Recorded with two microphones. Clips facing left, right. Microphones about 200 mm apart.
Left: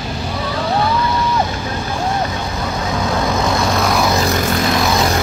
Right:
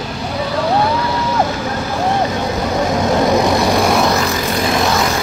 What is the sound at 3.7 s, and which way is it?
Vehicle, 30° right (ahead or behind).